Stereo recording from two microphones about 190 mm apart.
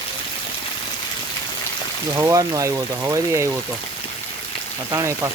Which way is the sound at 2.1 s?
15° right (ahead or behind).